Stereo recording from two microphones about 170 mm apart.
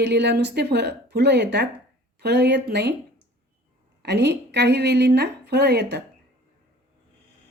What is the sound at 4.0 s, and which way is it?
A woman's voice, 80° right.